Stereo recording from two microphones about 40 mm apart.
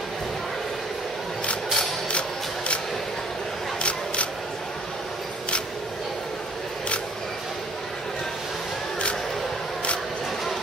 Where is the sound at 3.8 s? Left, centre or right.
Left.